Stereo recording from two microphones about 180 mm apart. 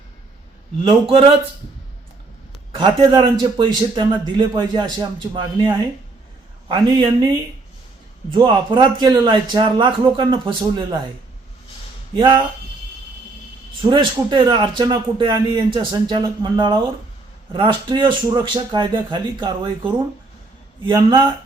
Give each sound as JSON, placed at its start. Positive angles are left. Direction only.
{"t": 0.9, "sound": "a man's voice", "side_deg": -30}
{"t": 2.7, "sound": "a man's voice", "side_deg": -25}
{"t": 8.3, "sound": "a man's voice", "side_deg": -25}
{"t": 12.1, "sound": "a man's voice", "side_deg": -25}
{"t": 13.9, "sound": "a man's voice", "side_deg": -25}